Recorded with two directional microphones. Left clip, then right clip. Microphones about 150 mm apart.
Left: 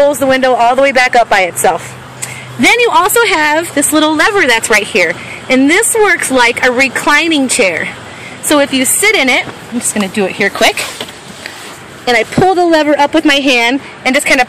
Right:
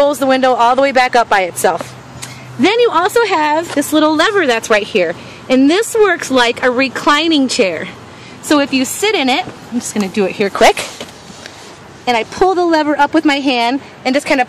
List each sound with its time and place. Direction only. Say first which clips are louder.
0.0 s speech: left 2 dB; 15° right (ahead or behind)
10.5 s speech: right 4 dB; 40° right (ahead or behind)
12.0 s speech: left 3 dB; 5° right (ahead or behind)